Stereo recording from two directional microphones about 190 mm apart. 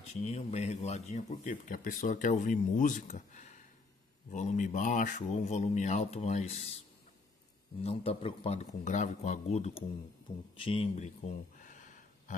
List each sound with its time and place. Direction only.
0.1 s speech: 35° left (ahead or behind)
7.8 s speech: 30° left (ahead or behind)
10.5 s a sound: 30° left (ahead or behind)